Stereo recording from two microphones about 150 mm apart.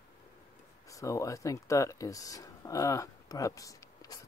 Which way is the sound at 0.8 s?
20° left (ahead or behind).